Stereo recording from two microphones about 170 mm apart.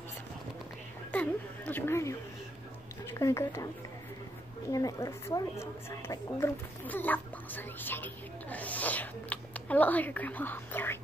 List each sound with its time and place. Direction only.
1.1 s a woman's voice: 10° left (ahead or behind)
4.6 s a woman's voice: 20° left (ahead or behind)